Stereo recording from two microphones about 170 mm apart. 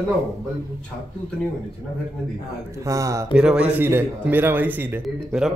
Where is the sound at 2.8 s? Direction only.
20° right (ahead or behind).